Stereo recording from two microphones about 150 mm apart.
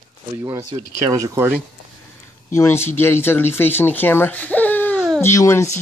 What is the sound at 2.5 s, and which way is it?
Speech, 15° left (ahead or behind).